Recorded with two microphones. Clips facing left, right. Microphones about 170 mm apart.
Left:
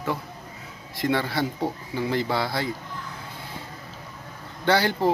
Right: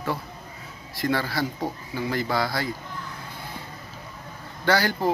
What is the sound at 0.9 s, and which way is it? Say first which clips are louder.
Speech: left 1 dB; 20° left (ahead or behind).